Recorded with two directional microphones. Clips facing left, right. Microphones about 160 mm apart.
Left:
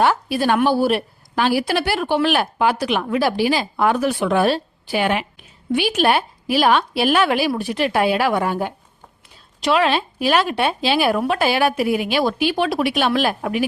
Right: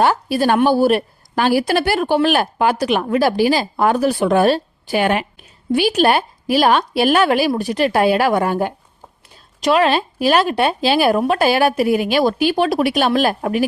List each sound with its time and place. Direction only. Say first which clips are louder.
0.0 s a woman's voice: right 2 dB; 40° right (ahead or behind)